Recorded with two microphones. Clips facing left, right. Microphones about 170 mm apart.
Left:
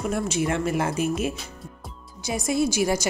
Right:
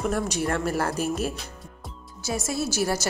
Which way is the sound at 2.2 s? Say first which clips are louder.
Left 4 dB; 15° left (ahead or behind).